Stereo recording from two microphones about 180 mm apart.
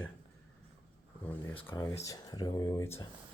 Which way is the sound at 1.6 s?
20° left (ahead or behind).